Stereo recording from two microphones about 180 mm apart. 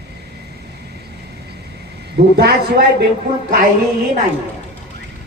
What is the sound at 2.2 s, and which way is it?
Speech, 65° right (ahead or behind).